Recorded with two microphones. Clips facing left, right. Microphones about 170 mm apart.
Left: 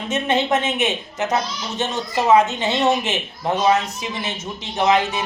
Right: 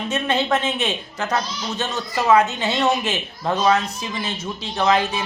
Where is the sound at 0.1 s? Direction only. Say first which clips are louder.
Left 2 dB; 20° left (ahead or behind).